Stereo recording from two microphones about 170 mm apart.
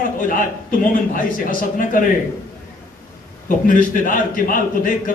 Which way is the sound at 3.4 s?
50° left (ahead or behind).